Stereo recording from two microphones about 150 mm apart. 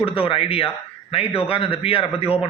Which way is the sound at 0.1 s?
35° left (ahead or behind).